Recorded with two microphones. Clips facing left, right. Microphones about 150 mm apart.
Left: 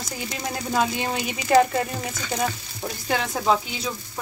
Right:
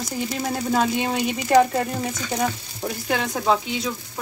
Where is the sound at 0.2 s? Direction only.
5° right (ahead or behind).